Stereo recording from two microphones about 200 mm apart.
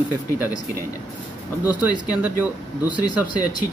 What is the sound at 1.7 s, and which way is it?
Speech, 10° right (ahead or behind).